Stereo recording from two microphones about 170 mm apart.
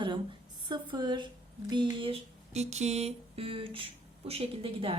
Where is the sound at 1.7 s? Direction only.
30° right (ahead or behind).